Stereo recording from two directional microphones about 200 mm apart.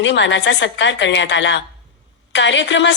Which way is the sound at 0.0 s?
65° left (ahead or behind).